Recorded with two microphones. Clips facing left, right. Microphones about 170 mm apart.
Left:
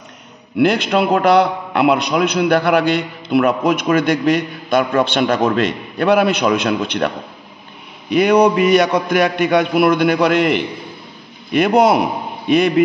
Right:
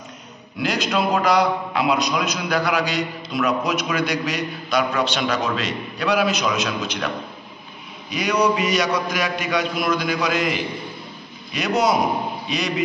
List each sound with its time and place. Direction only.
0.6 s a man's voice: 60° left (ahead or behind)
8.1 s a man's voice: 55° left (ahead or behind)